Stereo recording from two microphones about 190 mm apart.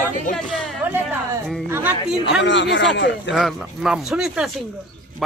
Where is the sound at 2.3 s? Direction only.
70° left (ahead or behind).